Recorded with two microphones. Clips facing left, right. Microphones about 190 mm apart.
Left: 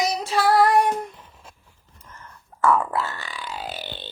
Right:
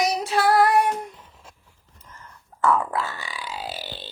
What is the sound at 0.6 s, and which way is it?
Child singing, 5° right (ahead or behind).